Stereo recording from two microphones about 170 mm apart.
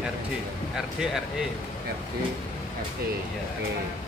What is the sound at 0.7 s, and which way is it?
Speech, centre (ahead or behind).